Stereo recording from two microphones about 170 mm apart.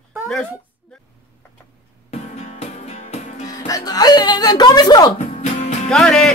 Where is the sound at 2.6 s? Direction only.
40° left (ahead or behind).